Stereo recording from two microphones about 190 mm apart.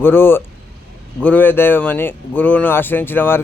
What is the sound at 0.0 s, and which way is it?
Speech, 10° left (ahead or behind).